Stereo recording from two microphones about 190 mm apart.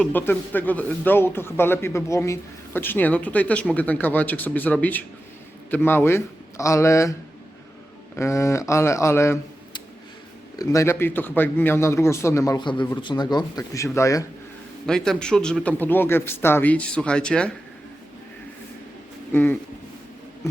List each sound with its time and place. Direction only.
0.0 s speech: 10° left (ahead or behind)
8.1 s speech: 15° left (ahead or behind)
14.8 s speech: 5° left (ahead or behind)
19.3 s speech: 10° left (ahead or behind)